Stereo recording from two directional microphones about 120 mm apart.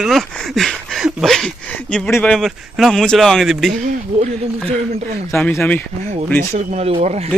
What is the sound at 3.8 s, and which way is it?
Speech, 75° right (ahead or behind).